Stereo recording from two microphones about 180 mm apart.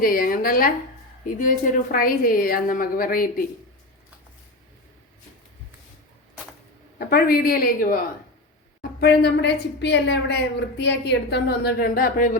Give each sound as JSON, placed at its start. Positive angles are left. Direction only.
{"t": 0.0, "sound": "a woman's voice", "side_deg": 50}
{"t": 7.0, "sound": "a woman's voice", "side_deg": 55}